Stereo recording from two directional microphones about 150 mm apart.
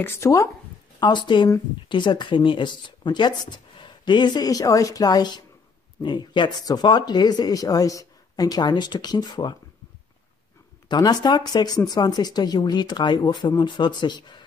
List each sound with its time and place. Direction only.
0.0 s speech: 20° left (ahead or behind)
0.9 s speech: 30° left (ahead or behind)
10.9 s speech: 30° left (ahead or behind)